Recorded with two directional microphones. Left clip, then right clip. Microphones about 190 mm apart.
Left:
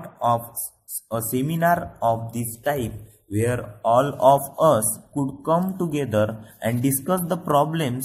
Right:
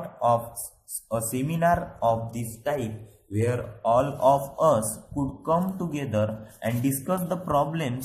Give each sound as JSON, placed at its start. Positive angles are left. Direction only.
{"t": 1.1, "sound": "a man's voice", "side_deg": 15}